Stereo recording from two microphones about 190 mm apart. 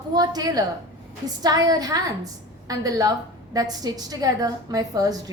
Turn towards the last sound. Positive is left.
turn(degrees=-20)  # may be behind; listen again after turning